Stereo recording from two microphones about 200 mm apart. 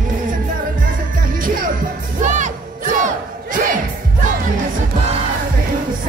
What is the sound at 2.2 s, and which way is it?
Battle cry, 40° right (ahead or behind).